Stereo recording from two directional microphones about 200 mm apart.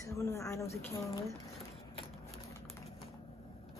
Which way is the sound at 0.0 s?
15° left (ahead or behind).